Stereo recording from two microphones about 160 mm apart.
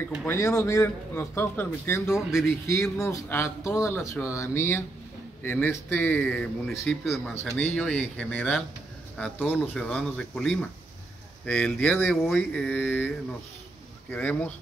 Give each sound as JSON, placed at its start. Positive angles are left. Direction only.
{"t": 0.2, "sound": "speech", "side_deg": 15}
{"t": 14.1, "sound": "speech", "side_deg": 10}